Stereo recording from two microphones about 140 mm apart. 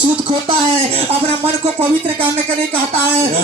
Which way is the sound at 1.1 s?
45° right (ahead or behind).